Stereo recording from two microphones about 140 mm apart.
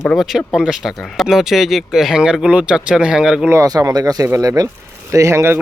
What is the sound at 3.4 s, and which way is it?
Speech, 25° right (ahead or behind).